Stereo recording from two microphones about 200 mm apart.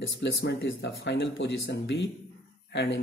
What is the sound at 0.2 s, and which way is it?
Speech, 60° left (ahead or behind).